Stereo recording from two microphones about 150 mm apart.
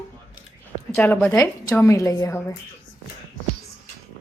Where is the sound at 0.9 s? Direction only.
10° left (ahead or behind).